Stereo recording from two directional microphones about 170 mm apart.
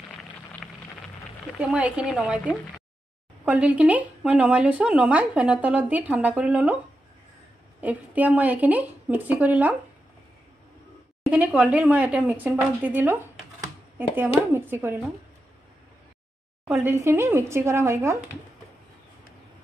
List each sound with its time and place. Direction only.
1.6 s speech: 5° right (ahead or behind)
7.8 s speech: 10° right (ahead or behind)
11.2 s speech: 5° right (ahead or behind)
16.8 s speech: 15° right (ahead or behind)